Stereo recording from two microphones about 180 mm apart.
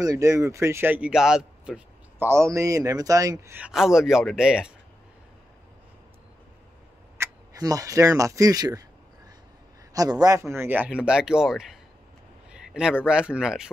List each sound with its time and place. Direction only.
0.0 s speech: 20° right (ahead or behind)
7.2 s speech: 20° right (ahead or behind)
9.9 s speech: 20° right (ahead or behind); by 13.7 s 5° right (ahead or behind)